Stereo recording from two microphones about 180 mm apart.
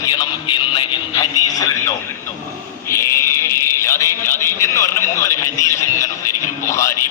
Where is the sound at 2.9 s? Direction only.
15° left (ahead or behind).